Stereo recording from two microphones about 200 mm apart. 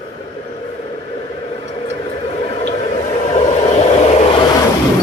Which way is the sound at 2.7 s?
35° left (ahead or behind).